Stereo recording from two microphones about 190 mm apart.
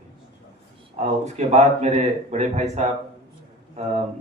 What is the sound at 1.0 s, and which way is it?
A man's voice, 35° right (ahead or behind).